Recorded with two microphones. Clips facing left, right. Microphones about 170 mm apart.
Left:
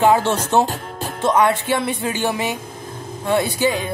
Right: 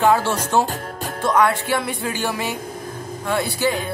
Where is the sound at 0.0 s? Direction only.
20° left (ahead or behind).